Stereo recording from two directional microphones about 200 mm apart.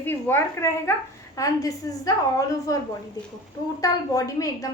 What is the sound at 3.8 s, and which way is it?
Speech, 15° left (ahead or behind).